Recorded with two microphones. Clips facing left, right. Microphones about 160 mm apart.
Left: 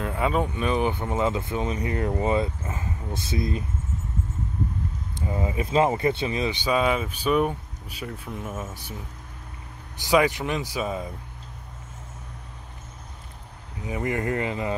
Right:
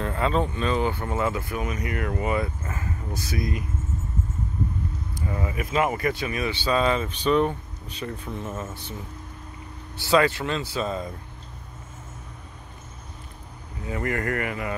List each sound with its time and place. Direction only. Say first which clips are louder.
0.0 s speech: even; 10° left (ahead or behind); by 3.6 s 25° left (ahead or behind)
5.3 s speech: left 3 dB; 20° left (ahead or behind)
9.9 s speech: even; 15° left (ahead or behind)
13.8 s speech: left 1 dB; 15° left (ahead or behind)